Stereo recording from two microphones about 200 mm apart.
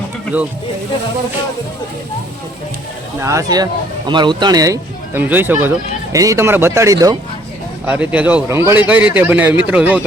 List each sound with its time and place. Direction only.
3.2 s speech: 15° right (ahead or behind)
7.9 s speech: 5° right (ahead or behind)